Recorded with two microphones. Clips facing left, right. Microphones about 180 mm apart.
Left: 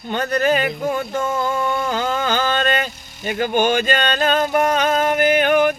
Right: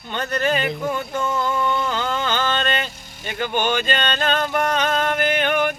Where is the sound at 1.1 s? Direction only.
45° left (ahead or behind).